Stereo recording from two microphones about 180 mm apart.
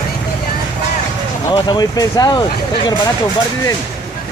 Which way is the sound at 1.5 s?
25° left (ahead or behind).